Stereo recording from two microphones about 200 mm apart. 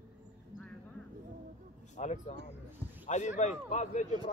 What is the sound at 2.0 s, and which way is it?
A man's voice, 35° left (ahead or behind).